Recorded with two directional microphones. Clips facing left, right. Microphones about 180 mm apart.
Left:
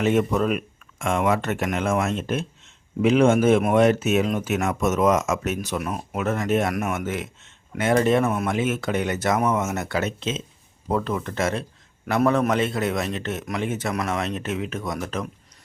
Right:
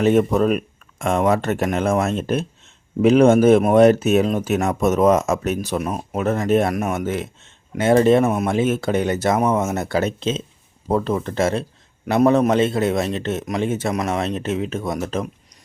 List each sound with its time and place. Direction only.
0.0 s a man's voice: 40° right (ahead or behind)